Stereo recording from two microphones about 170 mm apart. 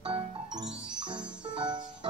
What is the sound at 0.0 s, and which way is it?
Music, 25° right (ahead or behind).